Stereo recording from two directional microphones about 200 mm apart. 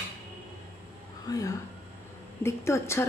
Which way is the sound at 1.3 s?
20° left (ahead or behind).